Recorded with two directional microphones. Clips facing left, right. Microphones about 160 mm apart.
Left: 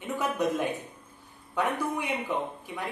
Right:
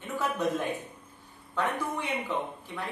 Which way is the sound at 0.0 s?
15° left (ahead or behind).